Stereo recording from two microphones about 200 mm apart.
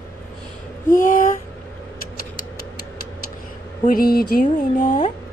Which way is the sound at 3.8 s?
45° left (ahead or behind).